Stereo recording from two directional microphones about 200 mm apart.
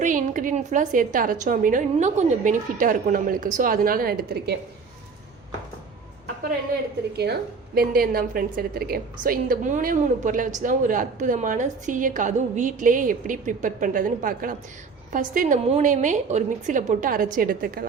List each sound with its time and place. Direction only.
0.0 s a woman's voice: 40° right (ahead or behind)
7.8 s a woman's voice: 45° right (ahead or behind)